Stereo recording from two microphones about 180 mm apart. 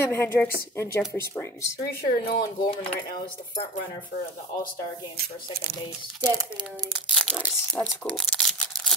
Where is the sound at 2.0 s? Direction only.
55° left (ahead or behind).